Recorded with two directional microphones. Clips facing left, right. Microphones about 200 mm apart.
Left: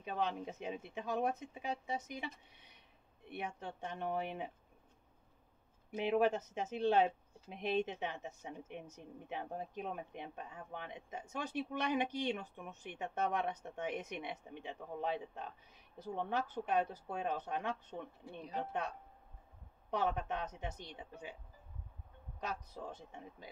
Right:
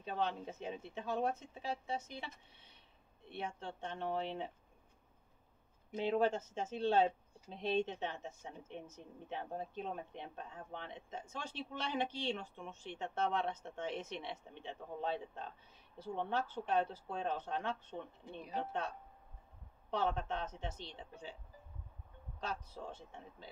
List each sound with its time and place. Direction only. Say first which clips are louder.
0.0 s speech: even; 15° left (ahead or behind)
5.9 s speech: left 1 dB; 10° left (ahead or behind)
19.9 s speech: even; 15° left (ahead or behind)